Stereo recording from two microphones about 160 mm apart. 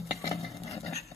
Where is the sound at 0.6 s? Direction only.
40° left (ahead or behind).